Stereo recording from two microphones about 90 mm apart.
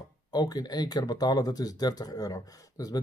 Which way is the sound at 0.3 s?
50° left (ahead or behind).